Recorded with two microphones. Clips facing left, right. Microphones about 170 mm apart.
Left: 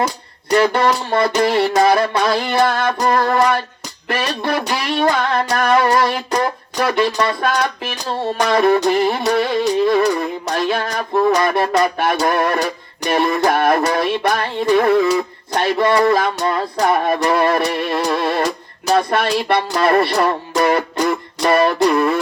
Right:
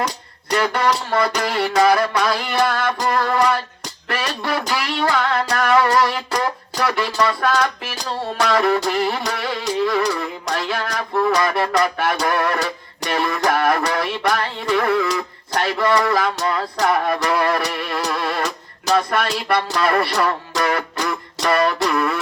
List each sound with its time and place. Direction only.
0.5 s music: 25° left (ahead or behind)